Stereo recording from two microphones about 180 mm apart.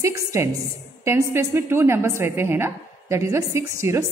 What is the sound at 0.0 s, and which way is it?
A woman's voice, 15° right (ahead or behind).